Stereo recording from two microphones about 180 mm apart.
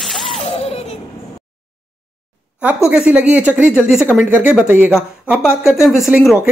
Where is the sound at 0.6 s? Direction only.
35° left (ahead or behind).